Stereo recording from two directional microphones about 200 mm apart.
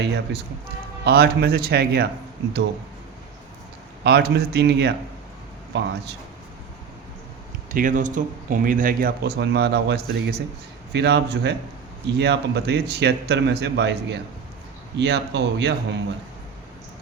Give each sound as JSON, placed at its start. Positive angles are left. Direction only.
{"t": 0.0, "sound": "speech", "side_deg": -55}
{"t": 4.0, "sound": "speech", "side_deg": -50}
{"t": 7.7, "sound": "speech", "side_deg": -40}